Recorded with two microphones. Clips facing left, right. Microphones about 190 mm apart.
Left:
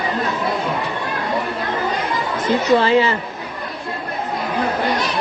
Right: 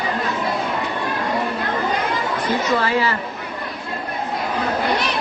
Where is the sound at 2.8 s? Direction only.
25° left (ahead or behind).